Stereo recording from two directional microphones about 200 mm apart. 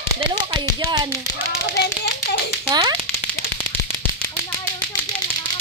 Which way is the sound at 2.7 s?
20° right (ahead or behind).